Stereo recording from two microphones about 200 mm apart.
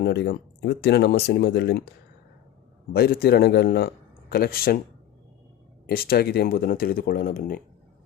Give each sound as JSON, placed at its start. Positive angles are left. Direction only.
{"t": 0.0, "sound": "speech", "side_deg": 55}
{"t": 2.9, "sound": "speech", "side_deg": 50}
{"t": 5.8, "sound": "speech", "side_deg": 50}